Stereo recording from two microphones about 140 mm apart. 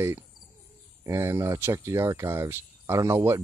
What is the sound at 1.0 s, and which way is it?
Speech, 20° right (ahead or behind).